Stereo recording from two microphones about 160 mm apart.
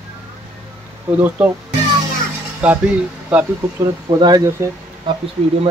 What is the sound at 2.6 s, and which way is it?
Speech, 10° right (ahead or behind).